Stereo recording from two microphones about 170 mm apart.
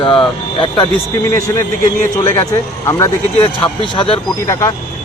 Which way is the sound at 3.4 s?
30° left (ahead or behind).